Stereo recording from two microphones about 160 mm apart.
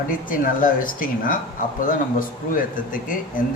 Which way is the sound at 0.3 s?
60° left (ahead or behind).